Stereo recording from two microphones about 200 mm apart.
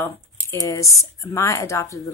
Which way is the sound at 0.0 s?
15° left (ahead or behind).